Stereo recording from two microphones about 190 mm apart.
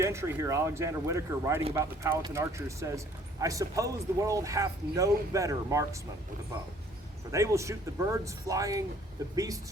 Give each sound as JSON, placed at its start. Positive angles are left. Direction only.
{"t": 0.0, "sound": "speech", "side_deg": -15}
{"t": 7.3, "sound": "speech", "side_deg": -15}